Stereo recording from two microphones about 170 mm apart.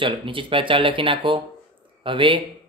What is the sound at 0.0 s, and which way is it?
Speech, 30° right (ahead or behind).